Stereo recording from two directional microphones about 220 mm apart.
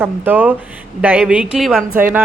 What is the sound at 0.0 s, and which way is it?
Speech, 10° right (ahead or behind).